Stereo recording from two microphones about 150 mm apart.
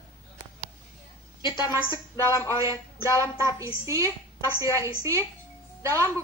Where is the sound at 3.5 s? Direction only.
20° right (ahead or behind).